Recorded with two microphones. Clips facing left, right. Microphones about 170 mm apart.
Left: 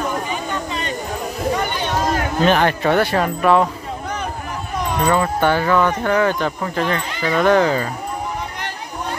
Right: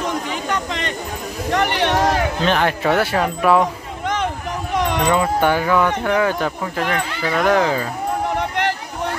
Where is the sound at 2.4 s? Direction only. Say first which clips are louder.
Left 3 dB; centre (ahead or behind).